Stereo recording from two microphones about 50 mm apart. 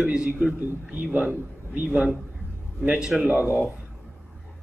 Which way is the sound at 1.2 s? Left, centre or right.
Right.